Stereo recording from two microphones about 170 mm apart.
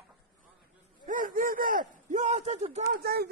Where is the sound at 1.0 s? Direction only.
50° right (ahead or behind).